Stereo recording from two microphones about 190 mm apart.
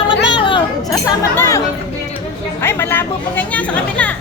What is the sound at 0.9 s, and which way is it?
Speech, 10° left (ahead or behind).